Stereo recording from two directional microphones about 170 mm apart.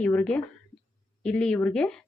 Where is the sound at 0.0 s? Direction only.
10° left (ahead or behind).